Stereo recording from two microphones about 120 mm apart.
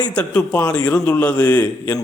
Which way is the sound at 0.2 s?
10° left (ahead or behind).